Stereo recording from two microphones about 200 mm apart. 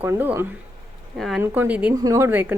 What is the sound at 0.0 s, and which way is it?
Speech, 10° right (ahead or behind).